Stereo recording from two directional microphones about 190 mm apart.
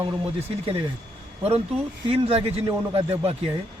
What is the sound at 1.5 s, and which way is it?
Speech, 30° right (ahead or behind).